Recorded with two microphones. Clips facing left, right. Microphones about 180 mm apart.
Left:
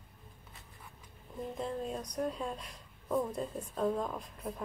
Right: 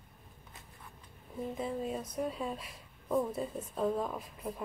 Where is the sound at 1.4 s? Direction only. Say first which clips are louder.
Right 1 dB; 5° right (ahead or behind).